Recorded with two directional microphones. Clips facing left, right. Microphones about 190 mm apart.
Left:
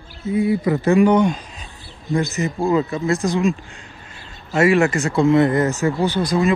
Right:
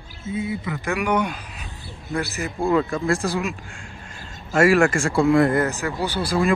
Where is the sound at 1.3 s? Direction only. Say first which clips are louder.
Left 1 dB; 10° right (ahead or behind).